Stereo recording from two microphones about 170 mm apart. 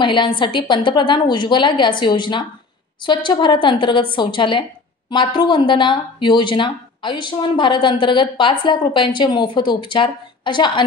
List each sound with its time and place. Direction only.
0.0 s speech: 30° left (ahead or behind)